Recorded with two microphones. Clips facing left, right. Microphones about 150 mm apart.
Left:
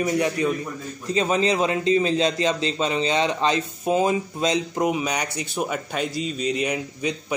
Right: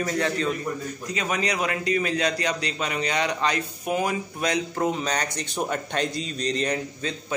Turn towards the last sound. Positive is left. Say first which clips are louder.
# left 2 dB
turn(degrees=10)  # may be behind; listen again after turning